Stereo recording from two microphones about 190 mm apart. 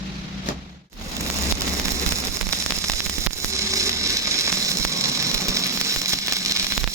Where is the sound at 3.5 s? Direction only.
15° right (ahead or behind).